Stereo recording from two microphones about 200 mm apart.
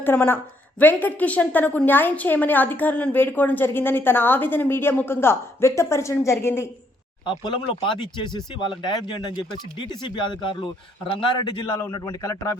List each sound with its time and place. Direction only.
0.0 s a woman's voice: 10° left (ahead or behind)
7.3 s speech: 25° left (ahead or behind)